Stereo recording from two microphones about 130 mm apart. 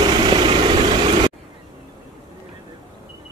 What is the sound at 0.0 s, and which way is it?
Vehicle, 40° right (ahead or behind).